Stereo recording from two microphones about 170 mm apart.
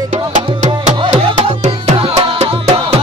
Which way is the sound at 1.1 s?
35° right (ahead or behind).